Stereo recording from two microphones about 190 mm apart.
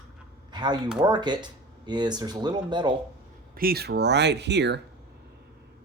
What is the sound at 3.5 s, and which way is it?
Speech, 50° right (ahead or behind).